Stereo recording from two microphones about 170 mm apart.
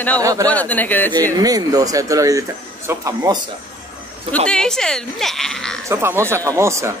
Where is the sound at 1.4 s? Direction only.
20° right (ahead or behind).